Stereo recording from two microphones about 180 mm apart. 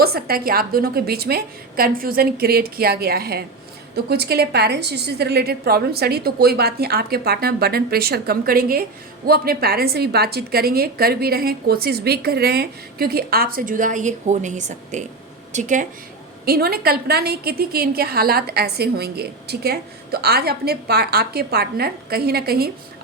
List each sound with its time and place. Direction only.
0.0 s a woman's voice: 60° right (ahead or behind)
16.5 s a woman's voice: 55° right (ahead or behind)